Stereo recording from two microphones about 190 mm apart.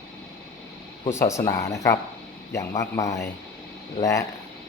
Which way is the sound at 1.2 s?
15° left (ahead or behind).